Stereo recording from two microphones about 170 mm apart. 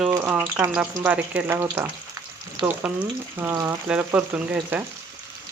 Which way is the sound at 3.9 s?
5° right (ahead or behind).